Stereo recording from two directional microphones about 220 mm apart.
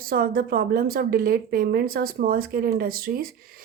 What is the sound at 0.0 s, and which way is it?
A woman's voice, 40° right (ahead or behind).